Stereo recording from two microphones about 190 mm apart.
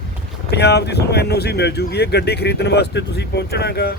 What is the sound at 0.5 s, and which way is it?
Speech, 60° left (ahead or behind).